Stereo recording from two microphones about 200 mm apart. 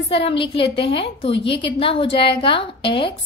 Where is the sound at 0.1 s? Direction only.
25° left (ahead or behind).